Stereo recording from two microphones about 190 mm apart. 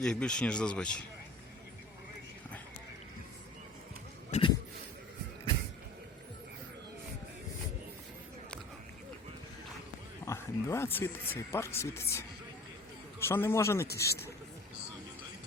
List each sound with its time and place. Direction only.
0.0 s speech: 5° left (ahead or behind)
4.3 s a sound: 30° left (ahead or behind)
10.2 s speech: 15° left (ahead or behind)